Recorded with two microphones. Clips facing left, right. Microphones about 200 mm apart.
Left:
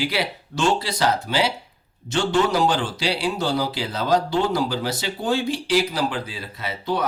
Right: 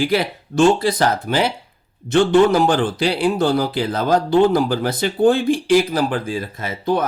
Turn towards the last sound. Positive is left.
turn(degrees=-50)  # may be behind; listen again after turning